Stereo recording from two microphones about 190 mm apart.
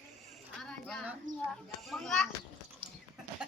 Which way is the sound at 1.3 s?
40° right (ahead or behind).